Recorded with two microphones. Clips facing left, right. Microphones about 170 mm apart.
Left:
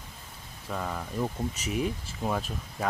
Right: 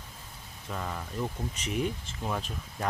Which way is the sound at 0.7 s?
Centre (ahead or behind).